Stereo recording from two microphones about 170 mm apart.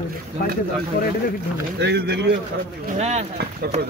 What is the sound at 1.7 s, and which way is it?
Speech, 75° right (ahead or behind).